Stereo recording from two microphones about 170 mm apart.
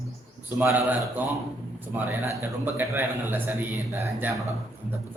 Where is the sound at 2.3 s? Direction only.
15° right (ahead or behind).